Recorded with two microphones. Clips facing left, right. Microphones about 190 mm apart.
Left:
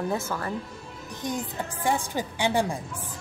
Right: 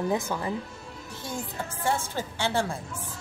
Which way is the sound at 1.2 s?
15° left (ahead or behind).